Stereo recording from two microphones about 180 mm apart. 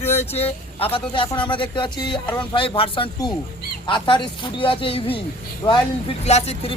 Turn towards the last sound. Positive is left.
turn(degrees=35)  # may be behind; listen again after turning